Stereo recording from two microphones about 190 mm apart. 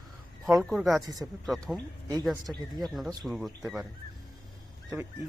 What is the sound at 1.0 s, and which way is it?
Speech, 20° right (ahead or behind).